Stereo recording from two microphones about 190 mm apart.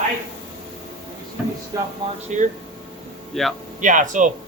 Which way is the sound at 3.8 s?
40° right (ahead or behind).